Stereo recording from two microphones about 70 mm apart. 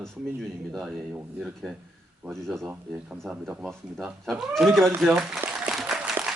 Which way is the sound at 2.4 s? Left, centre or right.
Centre.